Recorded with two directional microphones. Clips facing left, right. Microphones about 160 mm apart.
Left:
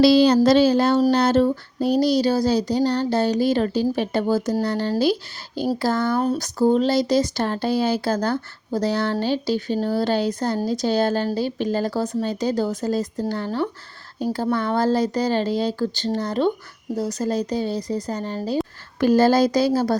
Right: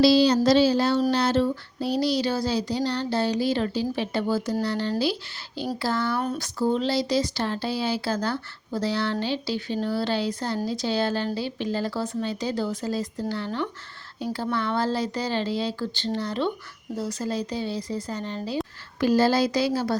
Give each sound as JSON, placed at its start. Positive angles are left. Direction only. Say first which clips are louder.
{"t": 0.0, "sound": "child singing", "louder": "left 4 dB", "side_deg": 55}